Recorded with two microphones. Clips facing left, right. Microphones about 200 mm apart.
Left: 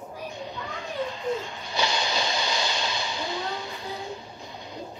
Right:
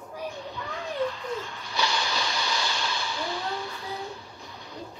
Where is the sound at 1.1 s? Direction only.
20° left (ahead or behind).